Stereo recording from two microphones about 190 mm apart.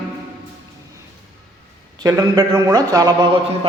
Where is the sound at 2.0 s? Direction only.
20° right (ahead or behind).